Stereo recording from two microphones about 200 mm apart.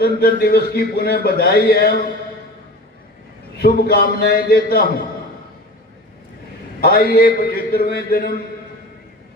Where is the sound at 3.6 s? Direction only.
50° left (ahead or behind).